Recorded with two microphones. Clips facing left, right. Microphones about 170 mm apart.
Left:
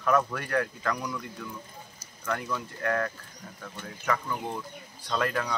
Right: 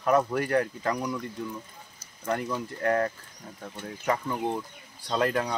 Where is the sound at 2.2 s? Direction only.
30° right (ahead or behind).